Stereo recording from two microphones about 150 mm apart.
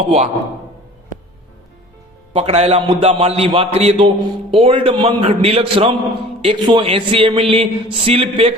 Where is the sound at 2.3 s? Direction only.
45° right (ahead or behind).